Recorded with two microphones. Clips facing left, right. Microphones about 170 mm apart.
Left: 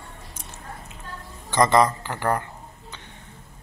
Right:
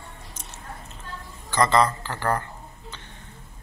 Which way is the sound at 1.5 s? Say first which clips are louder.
Left 2 dB; 15° left (ahead or behind).